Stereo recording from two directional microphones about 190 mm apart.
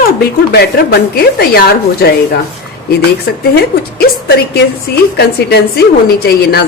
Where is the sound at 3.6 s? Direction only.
55° left (ahead or behind).